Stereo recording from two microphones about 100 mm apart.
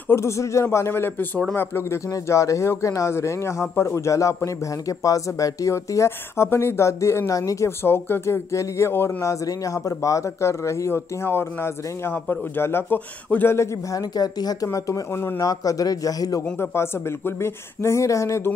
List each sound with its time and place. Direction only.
0.1 s speech: 30° left (ahead or behind)
7.8 s speech: 20° left (ahead or behind)
14.1 s speech: 40° left (ahead or behind)
16.5 s speech: 25° left (ahead or behind)